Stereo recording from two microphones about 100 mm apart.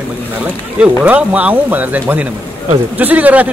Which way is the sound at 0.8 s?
15° right (ahead or behind).